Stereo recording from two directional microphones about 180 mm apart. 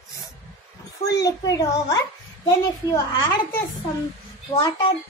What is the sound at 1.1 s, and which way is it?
Speech, 20° left (ahead or behind).